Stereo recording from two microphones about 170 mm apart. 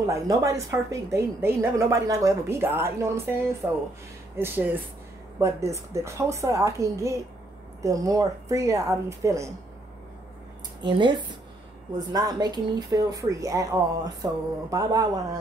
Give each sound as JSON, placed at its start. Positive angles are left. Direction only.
{"t": 0.0, "sound": "a woman's voice", "side_deg": -20}
{"t": 10.8, "sound": "speech", "side_deg": -30}